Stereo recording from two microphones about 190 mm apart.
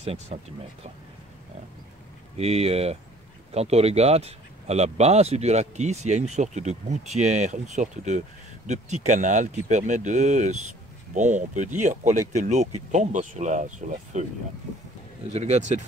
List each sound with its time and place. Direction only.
0.0 s speech: 35° right (ahead or behind)
2.3 s speech: 30° right (ahead or behind)
15.3 s speech: 35° right (ahead or behind)